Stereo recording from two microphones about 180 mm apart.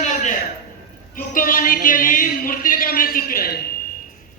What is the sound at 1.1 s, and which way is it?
Speech, 50° left (ahead or behind).